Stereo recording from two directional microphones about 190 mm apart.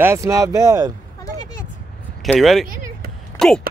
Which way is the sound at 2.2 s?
Centre (ahead or behind).